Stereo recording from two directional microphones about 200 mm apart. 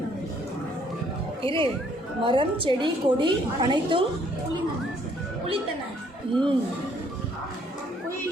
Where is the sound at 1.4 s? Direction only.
25° right (ahead or behind).